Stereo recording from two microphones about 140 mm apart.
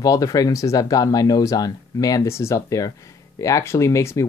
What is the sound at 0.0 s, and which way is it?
Speech, 25° left (ahead or behind).